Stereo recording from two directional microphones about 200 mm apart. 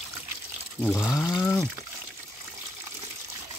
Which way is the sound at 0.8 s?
5° left (ahead or behind).